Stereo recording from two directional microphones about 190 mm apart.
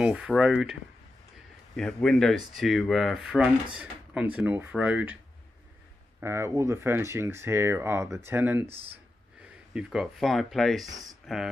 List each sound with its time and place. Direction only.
0.0 s speech: 5° right (ahead or behind)
1.8 s speech: 5° left (ahead or behind)
6.2 s speech: 15° right (ahead or behind)
8.6 s speech: 30° right (ahead or behind)
9.8 s speech: centre (ahead or behind)
10.9 s speech: 20° right (ahead or behind)
11.2 s speech: centre (ahead or behind)